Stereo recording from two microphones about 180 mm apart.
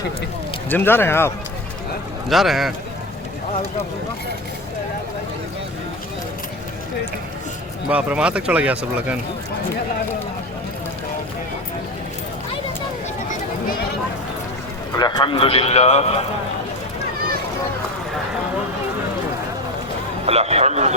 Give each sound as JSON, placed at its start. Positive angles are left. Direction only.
{"t": 0.7, "sound": "speech", "side_deg": 10}
{"t": 2.3, "sound": "a man's voice", "side_deg": 0}
{"t": 7.9, "sound": "speech", "side_deg": -5}
{"t": 14.9, "sound": "a man's voice", "side_deg": 25}
{"t": 20.2, "sound": "a man's voice", "side_deg": -35}